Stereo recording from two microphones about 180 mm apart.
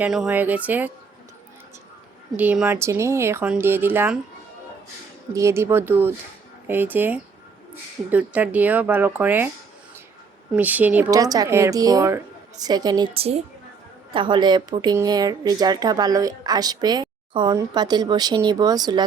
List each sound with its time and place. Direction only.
0.0 s speech: 5° right (ahead or behind)
2.3 s speech: 10° right (ahead or behind)
5.3 s speech: 15° right (ahead or behind)
10.5 s speech: 10° right (ahead or behind)
11.1 s a woman's voice: 20° right (ahead or behind)